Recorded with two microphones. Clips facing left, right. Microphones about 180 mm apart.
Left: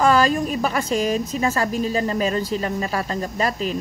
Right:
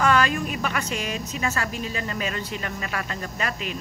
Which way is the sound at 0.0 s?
35° left (ahead or behind).